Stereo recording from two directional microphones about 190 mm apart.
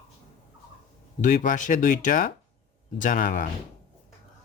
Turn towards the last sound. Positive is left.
turn(degrees=45)  # may be behind; listen again after turning